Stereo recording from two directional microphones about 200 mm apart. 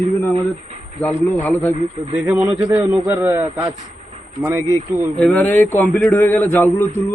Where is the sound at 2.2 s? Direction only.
15° right (ahead or behind).